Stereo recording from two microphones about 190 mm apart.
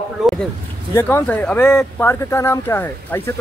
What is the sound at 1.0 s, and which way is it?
Speech, 10° left (ahead or behind).